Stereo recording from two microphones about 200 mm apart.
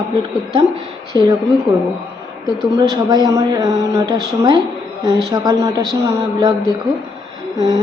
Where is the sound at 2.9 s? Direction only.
20° right (ahead or behind).